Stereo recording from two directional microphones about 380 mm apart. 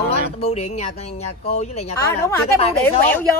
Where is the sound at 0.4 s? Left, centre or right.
Centre.